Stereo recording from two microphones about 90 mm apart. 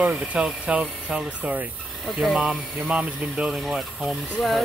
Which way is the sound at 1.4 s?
20° right (ahead or behind).